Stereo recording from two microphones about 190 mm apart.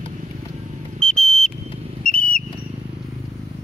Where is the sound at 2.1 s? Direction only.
45° left (ahead or behind).